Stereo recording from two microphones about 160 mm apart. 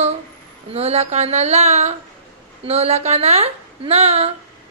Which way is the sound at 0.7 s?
40° right (ahead or behind).